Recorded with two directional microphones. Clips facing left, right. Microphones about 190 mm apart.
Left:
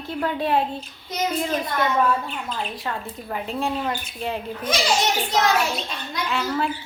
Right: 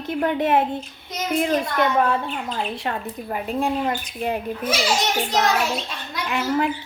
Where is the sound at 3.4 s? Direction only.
15° right (ahead or behind).